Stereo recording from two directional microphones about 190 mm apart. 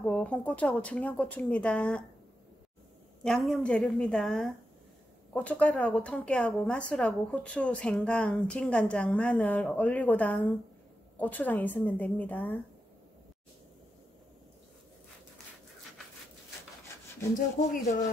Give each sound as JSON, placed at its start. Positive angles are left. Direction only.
{"t": 0.0, "sound": "a woman's voice", "side_deg": 5}
{"t": 3.3, "sound": "a woman's voice", "side_deg": 0}
{"t": 17.6, "sound": "speech", "side_deg": 45}